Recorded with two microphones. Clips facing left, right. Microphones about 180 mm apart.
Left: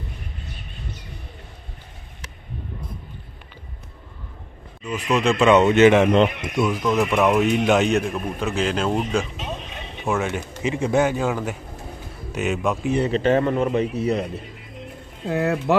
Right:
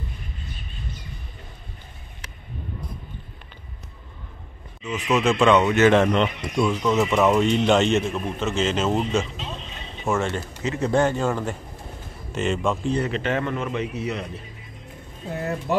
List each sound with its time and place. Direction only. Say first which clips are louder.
4.8 s speech: left 1 dB; centre (ahead or behind)
5.5 s speech: left 4 dB; 20° left (ahead or behind)
6.5 s speech: even; 5° left (ahead or behind)
9.4 s vehicle: left 3 dB; 60° left (ahead or behind)
10.0 s speech: even; centre (ahead or behind)
10.6 s speech: left 1 dB; 10° left (ahead or behind)
13.0 s a man's voice: left 6 dB; 35° left (ahead or behind)
14.8 s bird: left 6 dB; 80° left